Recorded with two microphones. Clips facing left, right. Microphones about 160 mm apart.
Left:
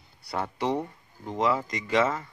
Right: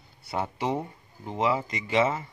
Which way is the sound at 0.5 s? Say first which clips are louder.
Left 2 dB; 5° right (ahead or behind).